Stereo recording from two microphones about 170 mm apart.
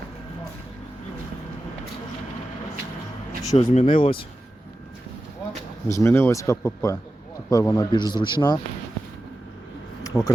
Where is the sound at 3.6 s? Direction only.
40° left (ahead or behind).